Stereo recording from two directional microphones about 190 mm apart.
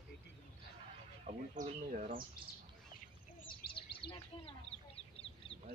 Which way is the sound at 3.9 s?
30° left (ahead or behind).